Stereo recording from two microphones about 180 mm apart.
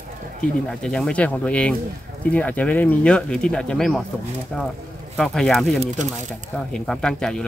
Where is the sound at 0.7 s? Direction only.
5° left (ahead or behind).